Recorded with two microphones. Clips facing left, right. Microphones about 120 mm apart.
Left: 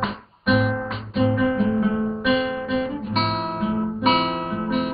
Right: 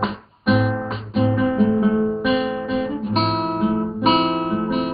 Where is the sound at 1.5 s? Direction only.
30° right (ahead or behind).